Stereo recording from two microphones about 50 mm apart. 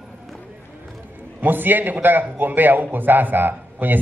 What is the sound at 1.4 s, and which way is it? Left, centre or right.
A man's voice, right.